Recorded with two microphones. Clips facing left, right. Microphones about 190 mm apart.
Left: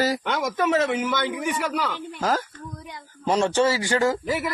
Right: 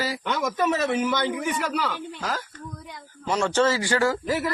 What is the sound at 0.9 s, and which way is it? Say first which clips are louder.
Speech: right 1 dB; 15° left (ahead or behind).